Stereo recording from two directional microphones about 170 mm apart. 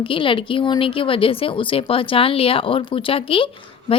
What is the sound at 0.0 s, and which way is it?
A woman's voice, 30° left (ahead or behind).